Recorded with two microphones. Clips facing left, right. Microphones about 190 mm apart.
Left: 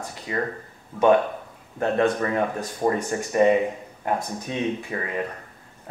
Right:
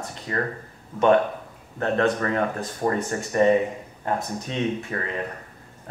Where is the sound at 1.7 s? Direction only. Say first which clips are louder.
Left 1 dB; 15° left (ahead or behind).